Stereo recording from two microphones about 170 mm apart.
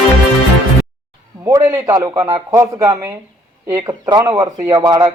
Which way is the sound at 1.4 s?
15° right (ahead or behind).